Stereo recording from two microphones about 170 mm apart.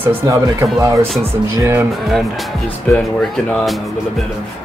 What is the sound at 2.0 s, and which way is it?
Speech, centre (ahead or behind).